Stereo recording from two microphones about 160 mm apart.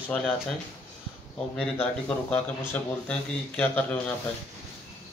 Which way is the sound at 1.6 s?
10° left (ahead or behind).